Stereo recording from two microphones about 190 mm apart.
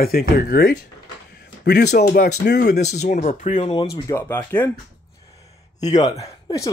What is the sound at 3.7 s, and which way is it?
Speech, 20° left (ahead or behind).